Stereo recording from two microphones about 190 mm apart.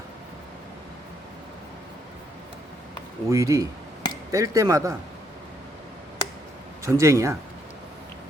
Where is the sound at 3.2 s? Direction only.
15° right (ahead or behind).